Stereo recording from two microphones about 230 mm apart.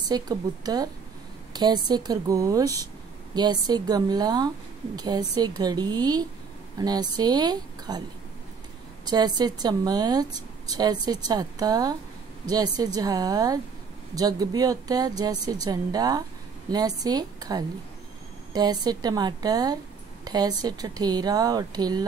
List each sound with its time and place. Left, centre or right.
0.1 s speech: centre
9.0 s speech: centre